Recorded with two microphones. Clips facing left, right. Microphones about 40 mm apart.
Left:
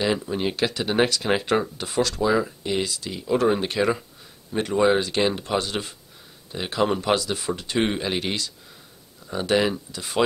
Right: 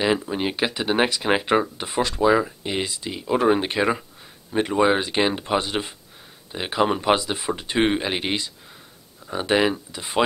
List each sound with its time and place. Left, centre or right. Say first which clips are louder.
0.0 s speech: right 2 dB; centre